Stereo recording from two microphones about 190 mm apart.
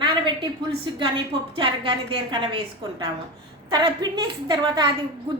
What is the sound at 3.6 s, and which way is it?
A woman's voice, 20° right (ahead or behind).